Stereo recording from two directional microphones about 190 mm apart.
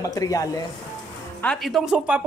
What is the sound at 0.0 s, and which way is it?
Speech, 20° left (ahead or behind).